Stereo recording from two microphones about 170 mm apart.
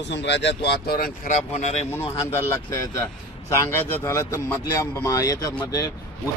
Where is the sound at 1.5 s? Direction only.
40° left (ahead or behind).